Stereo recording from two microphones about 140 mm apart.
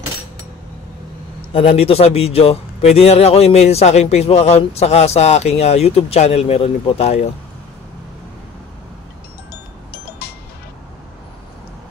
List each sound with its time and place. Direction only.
1.5 s a man's voice: 40° left (ahead or behind)